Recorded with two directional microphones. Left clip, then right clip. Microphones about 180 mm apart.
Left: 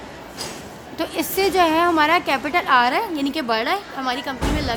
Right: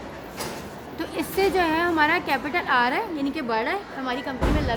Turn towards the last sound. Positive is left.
turn(degrees=45)  # may be behind; listen again after turning